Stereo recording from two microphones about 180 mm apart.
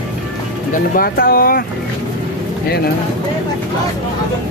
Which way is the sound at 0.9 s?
55° left (ahead or behind).